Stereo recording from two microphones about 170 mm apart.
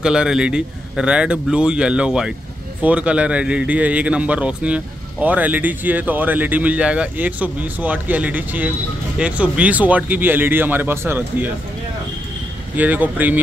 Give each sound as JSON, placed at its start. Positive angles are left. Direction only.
{"t": 0.0, "sound": "a man's voice", "side_deg": -5}
{"t": 12.7, "sound": "a man's voice", "side_deg": -10}